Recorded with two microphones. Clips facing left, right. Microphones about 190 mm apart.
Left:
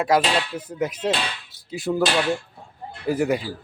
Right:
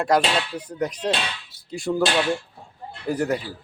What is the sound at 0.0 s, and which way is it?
Speech, 5° left (ahead or behind).